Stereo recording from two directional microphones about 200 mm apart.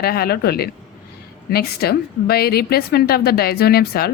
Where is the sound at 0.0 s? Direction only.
50° left (ahead or behind).